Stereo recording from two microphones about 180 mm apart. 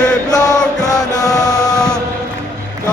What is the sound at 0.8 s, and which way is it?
Music, 20° left (ahead or behind).